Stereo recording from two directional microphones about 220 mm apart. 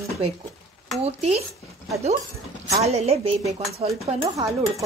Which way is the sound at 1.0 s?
30° right (ahead or behind).